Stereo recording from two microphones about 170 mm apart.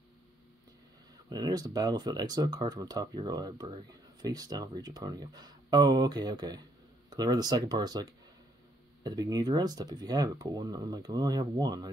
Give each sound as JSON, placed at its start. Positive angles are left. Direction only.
{"t": 1.3, "sound": "speech", "side_deg": -25}